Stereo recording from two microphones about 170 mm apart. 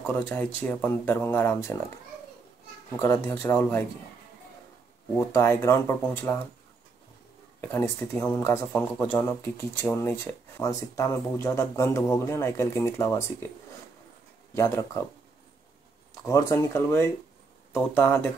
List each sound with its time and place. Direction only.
0.0 s speech: 10° left (ahead or behind)
3.0 s speech: 15° left (ahead or behind)
5.1 s speech: 15° left (ahead or behind)
7.6 s speech: 15° left (ahead or behind)
14.5 s speech: 15° left (ahead or behind)
16.3 s speech: 20° left (ahead or behind)